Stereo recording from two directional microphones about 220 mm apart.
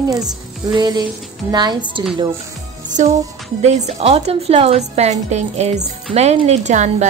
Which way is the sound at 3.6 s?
30° right (ahead or behind).